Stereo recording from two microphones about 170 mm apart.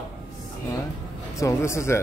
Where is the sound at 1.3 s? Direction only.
15° left (ahead or behind).